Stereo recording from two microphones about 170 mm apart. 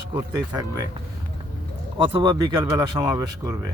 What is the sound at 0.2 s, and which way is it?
Speech, 25° right (ahead or behind).